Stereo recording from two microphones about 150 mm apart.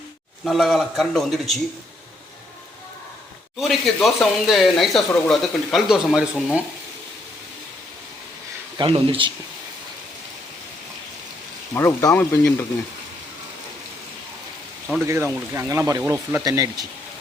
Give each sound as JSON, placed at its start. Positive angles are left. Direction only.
{"t": 0.4, "sound": "speech", "side_deg": 0}
{"t": 3.6, "sound": "speech", "side_deg": 0}
{"t": 8.8, "sound": "speech", "side_deg": -35}
{"t": 11.7, "sound": "speech", "side_deg": 15}
{"t": 15.0, "sound": "speech", "side_deg": -15}